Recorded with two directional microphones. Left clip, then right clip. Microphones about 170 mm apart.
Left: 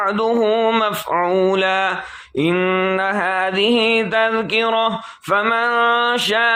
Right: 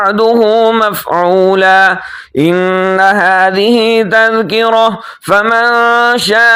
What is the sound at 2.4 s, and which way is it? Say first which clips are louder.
Male singing: right 7 dB; 25° right (ahead or behind).